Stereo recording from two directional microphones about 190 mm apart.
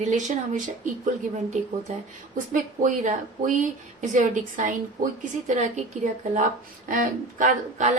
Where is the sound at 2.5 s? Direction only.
40° right (ahead or behind).